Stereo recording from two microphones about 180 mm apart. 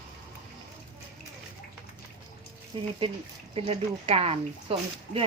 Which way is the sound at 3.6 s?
35° right (ahead or behind).